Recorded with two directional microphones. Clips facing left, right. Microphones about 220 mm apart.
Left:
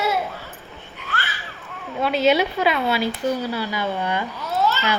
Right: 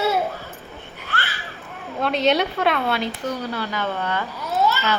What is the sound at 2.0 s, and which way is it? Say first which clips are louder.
Speech: left 1 dB; 5° left (ahead or behind).